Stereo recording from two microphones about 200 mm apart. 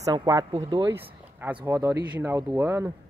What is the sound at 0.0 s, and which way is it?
Speech, 20° right (ahead or behind).